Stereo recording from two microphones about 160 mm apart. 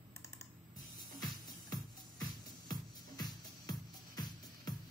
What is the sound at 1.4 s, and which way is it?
Music, 25° left (ahead or behind).